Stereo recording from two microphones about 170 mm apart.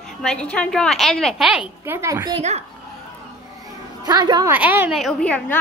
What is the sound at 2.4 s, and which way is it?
Speech, 40° right (ahead or behind).